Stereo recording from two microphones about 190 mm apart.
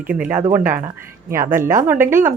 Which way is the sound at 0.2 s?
10° right (ahead or behind).